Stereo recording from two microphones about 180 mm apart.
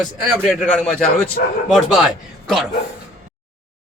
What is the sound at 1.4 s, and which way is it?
Speech, 55° left (ahead or behind).